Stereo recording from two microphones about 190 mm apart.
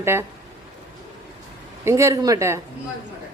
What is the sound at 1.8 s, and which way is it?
Speech, 15° right (ahead or behind).